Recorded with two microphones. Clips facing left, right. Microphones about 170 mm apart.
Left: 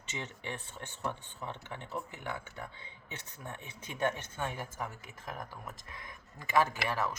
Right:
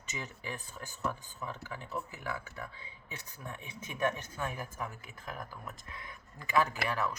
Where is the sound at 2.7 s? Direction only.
30° left (ahead or behind).